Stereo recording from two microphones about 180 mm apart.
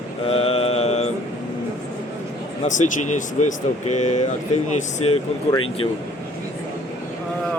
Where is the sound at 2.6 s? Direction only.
45° left (ahead or behind).